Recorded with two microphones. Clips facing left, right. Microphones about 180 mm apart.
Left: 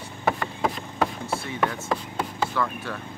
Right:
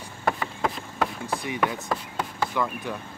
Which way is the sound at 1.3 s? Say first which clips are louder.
Even; 15° right (ahead or behind).